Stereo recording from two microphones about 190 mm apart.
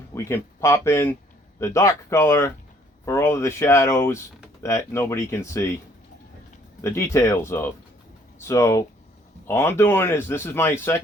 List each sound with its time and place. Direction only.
0.1 s speech: 15° left (ahead or behind)
6.8 s speech: 15° left (ahead or behind)